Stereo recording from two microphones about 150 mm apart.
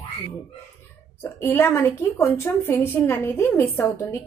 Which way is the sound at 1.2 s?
15° left (ahead or behind).